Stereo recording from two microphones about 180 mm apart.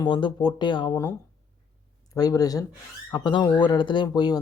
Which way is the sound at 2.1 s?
20° left (ahead or behind).